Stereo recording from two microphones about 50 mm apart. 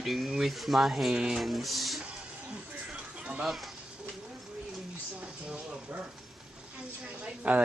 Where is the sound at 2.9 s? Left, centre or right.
Centre.